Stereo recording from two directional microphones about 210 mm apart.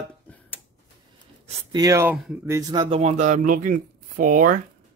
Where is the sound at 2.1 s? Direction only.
Centre (ahead or behind).